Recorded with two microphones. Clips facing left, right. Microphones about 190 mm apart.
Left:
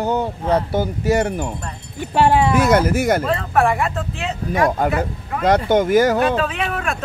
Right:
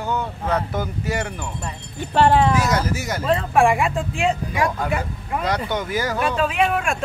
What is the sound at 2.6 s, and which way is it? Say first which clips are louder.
Speech: left 6 dB; 55° left (ahead or behind).